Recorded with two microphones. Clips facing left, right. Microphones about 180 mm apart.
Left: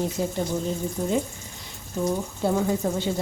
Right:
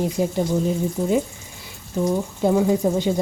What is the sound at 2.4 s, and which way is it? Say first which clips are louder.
Speech: right 5 dB; 15° right (ahead or behind).